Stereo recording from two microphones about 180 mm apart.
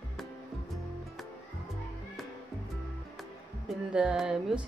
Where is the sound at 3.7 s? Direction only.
5° right (ahead or behind).